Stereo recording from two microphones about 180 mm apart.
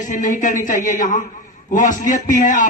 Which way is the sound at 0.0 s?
45° left (ahead or behind).